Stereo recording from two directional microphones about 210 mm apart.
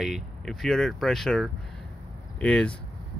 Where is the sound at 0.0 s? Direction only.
Centre (ahead or behind).